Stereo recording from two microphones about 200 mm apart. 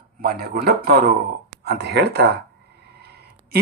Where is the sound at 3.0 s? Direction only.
55° right (ahead or behind).